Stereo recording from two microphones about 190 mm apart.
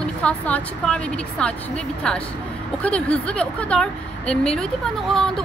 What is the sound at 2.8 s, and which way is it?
A woman's voice, 5° left (ahead or behind).